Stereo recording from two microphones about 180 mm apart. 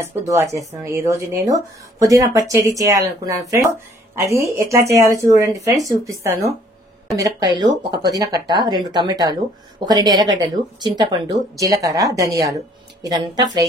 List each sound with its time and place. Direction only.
0.0 s speech: 15° right (ahead or behind)